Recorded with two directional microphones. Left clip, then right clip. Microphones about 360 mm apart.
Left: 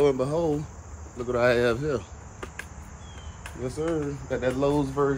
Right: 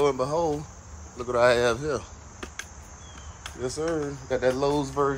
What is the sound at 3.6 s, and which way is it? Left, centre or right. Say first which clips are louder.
Speech: even; centre.